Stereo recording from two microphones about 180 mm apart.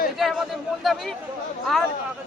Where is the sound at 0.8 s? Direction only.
Centre (ahead or behind).